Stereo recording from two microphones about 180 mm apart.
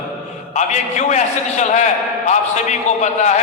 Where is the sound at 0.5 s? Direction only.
40° left (ahead or behind).